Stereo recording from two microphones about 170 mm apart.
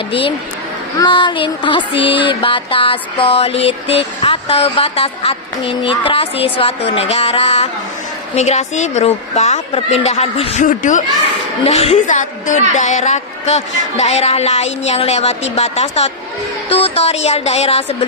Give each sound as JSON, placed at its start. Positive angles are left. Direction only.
{"t": 0.1, "sound": "a woman's voice", "side_deg": 30}
{"t": 11.6, "sound": "a woman's voice", "side_deg": 35}